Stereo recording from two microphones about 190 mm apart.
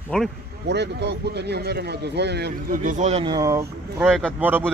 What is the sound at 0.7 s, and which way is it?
Speech, 65° right (ahead or behind).